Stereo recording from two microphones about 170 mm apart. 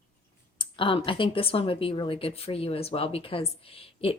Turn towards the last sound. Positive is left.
turn(degrees=35)  # may be behind; listen again after turning